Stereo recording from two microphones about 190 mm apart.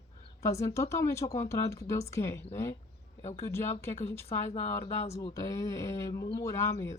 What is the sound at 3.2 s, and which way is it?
Speech, 30° left (ahead or behind).